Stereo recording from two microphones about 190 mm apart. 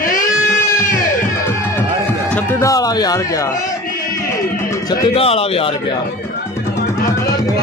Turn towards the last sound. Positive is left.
turn(degrees=30)  # may be behind; listen again after turning